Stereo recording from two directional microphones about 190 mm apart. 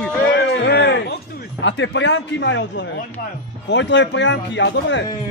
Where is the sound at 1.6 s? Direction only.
70° left (ahead or behind).